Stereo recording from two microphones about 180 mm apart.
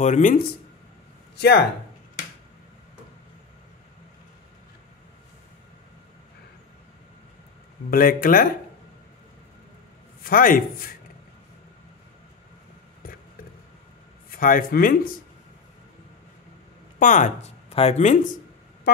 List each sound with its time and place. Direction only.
0.0 s a man's voice: 45° left (ahead or behind)
1.3 s speech: 70° left (ahead or behind)
7.9 s a man's voice: 50° left (ahead or behind)
10.2 s a man's voice: 50° left (ahead or behind)
14.3 s a man's voice: 50° left (ahead or behind)
17.0 s speech: 45° left (ahead or behind)